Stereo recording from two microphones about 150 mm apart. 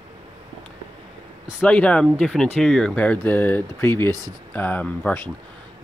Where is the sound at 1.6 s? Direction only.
10° left (ahead or behind).